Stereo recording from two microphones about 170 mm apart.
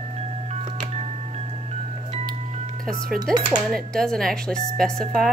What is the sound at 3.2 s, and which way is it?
Speech, 25° right (ahead or behind).